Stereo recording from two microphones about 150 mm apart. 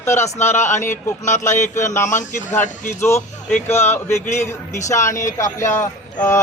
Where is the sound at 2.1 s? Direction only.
55° left (ahead or behind).